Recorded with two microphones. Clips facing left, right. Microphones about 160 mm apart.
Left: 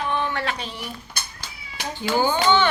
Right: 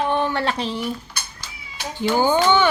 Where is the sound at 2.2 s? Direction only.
15° right (ahead or behind).